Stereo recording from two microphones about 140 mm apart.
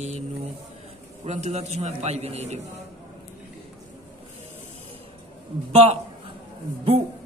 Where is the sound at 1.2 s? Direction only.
55° right (ahead or behind).